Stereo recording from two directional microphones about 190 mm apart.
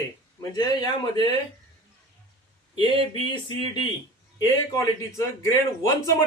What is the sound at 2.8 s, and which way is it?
A man's voice, 25° left (ahead or behind).